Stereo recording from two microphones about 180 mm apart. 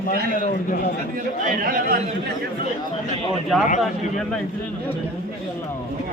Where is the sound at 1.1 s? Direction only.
50° right (ahead or behind).